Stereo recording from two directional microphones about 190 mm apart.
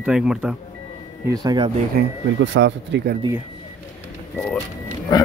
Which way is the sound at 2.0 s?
70° right (ahead or behind).